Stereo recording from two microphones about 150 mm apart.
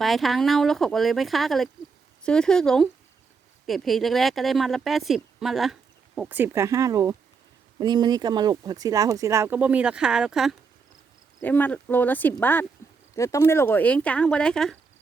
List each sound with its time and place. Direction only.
0.0 s a woman's voice: centre (ahead or behind)
6.1 s speech: 10° right (ahead or behind)
11.4 s speech: 10° left (ahead or behind)